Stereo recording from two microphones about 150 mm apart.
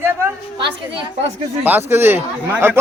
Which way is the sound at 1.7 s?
15° right (ahead or behind).